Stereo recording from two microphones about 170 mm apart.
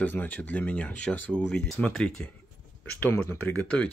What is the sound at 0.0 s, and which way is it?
Speech, 10° left (ahead or behind).